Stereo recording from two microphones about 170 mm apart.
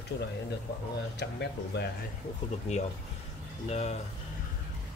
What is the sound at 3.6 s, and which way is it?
Speech, 40° left (ahead or behind).